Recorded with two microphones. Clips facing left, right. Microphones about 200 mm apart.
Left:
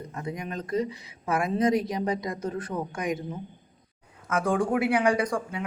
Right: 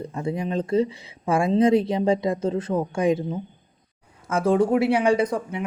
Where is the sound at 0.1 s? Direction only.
30° right (ahead or behind).